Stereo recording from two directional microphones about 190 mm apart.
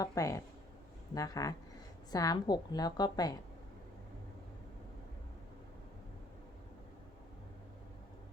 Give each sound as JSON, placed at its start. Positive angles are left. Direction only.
{"t": 0.0, "sound": "a woman's voice", "side_deg": 15}